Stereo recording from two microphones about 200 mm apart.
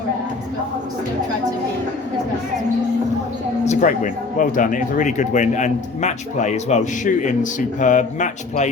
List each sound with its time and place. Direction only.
3.7 s speech: 40° left (ahead or behind)